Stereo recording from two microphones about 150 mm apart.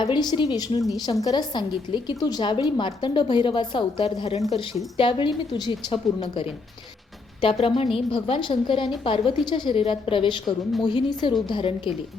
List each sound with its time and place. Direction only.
0.0 s a woman's voice: 30° left (ahead or behind)